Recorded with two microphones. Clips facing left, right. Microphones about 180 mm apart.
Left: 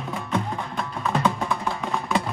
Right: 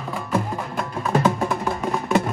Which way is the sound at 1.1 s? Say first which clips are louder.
Right 4 dB; 40° right (ahead or behind).